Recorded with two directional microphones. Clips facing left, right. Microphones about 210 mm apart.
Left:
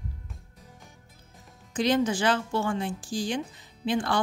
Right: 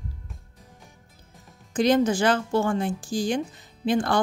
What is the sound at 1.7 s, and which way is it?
A woman's voice, 45° right (ahead or behind).